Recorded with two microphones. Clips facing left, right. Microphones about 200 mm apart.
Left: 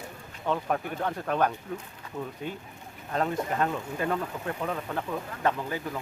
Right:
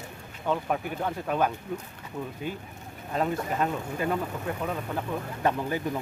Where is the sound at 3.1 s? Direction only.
5° right (ahead or behind).